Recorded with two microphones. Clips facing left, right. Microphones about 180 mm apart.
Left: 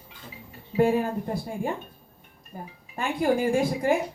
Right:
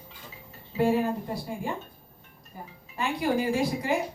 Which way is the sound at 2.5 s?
50° left (ahead or behind).